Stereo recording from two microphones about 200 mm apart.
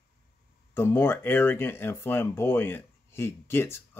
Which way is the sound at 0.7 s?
10° left (ahead or behind).